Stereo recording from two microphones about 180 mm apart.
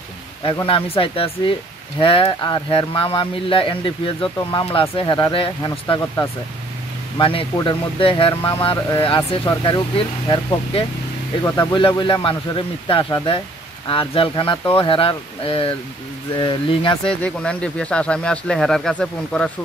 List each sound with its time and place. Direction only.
0.5 s speech: 30° left (ahead or behind)
17.0 s speech: 5° left (ahead or behind)